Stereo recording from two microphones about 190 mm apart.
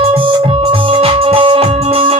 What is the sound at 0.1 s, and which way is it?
Music, 30° right (ahead or behind).